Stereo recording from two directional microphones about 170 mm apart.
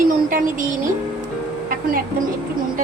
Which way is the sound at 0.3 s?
55° right (ahead or behind).